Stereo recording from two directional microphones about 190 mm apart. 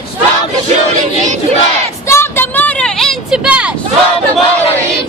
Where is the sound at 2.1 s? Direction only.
10° left (ahead or behind); by 3.7 s 5° right (ahead or behind).